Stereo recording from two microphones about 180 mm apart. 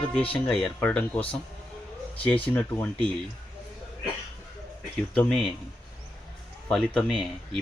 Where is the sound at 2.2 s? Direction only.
10° left (ahead or behind).